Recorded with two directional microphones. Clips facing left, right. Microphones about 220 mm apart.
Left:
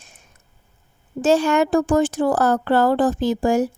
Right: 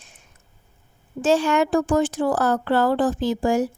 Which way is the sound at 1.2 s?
45° left (ahead or behind).